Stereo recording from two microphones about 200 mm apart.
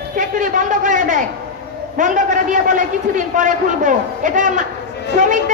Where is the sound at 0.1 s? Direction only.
40° right (ahead or behind).